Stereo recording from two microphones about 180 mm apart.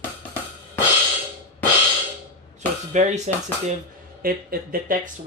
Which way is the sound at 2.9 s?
40° right (ahead or behind).